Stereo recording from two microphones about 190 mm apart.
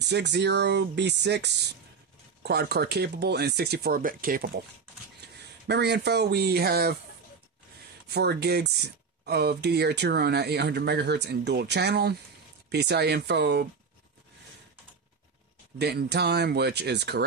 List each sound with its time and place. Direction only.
0.0 s speech: 65° right (ahead or behind)
5.7 s speech: 60° right (ahead or behind)
8.1 s speech: 60° right (ahead or behind)
15.8 s speech: 60° right (ahead or behind)